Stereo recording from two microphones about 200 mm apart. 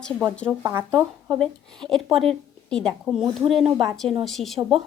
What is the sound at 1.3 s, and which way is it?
A woman's voice, 5° left (ahead or behind).